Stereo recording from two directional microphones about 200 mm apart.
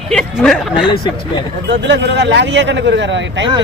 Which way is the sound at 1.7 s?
60° right (ahead or behind).